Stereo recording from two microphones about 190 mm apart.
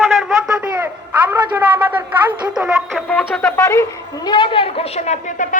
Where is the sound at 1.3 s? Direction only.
10° right (ahead or behind).